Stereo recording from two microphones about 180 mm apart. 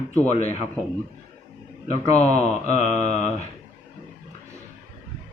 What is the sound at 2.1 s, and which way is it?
Speech, 40° left (ahead or behind).